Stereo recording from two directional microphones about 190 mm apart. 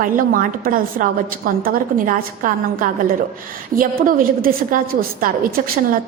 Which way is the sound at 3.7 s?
45° right (ahead or behind).